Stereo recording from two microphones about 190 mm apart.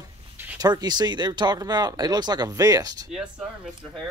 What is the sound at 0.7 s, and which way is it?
Speech, 20° right (ahead or behind).